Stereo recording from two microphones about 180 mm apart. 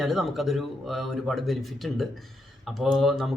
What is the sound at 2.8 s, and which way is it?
Speech, centre (ahead or behind).